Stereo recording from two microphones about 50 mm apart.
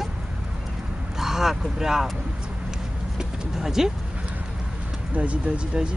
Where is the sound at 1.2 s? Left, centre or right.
Centre.